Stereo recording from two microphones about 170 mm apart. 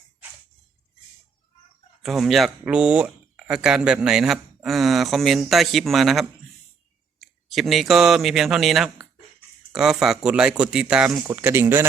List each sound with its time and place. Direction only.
2.0 s speech: centre (ahead or behind)
11.3 s speech: 15° right (ahead or behind)